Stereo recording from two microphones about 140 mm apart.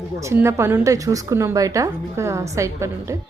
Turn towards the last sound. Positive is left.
turn(degrees=-20)  # may be behind; listen again after turning